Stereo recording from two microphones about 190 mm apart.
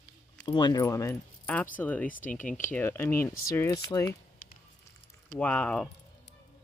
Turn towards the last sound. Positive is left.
turn(degrees=5)  # may be behind; listen again after turning